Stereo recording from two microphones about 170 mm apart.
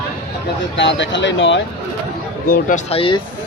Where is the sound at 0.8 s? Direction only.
90° left.